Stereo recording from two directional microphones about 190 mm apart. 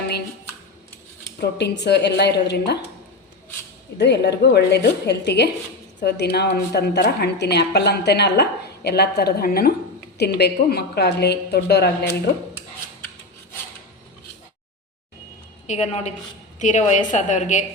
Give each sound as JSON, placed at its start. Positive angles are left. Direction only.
{"t": 1.4, "sound": "a woman's voice", "side_deg": 65}
{"t": 3.9, "sound": "a woman's voice", "side_deg": 60}
{"t": 15.6, "sound": "a woman's voice", "side_deg": 35}